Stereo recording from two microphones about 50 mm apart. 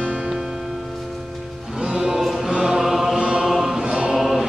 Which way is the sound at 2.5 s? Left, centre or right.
Centre.